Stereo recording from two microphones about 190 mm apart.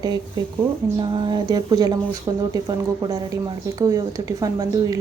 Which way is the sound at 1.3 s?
20° right (ahead or behind).